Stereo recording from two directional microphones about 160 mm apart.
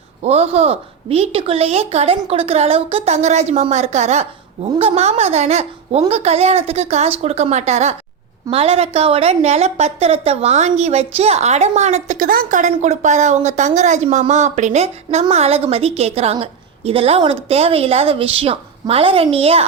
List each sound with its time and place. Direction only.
0.2 s a woman's voice: 40° right (ahead or behind)